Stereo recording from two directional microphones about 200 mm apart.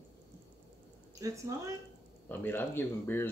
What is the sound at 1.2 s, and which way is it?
Speech, 15° right (ahead or behind).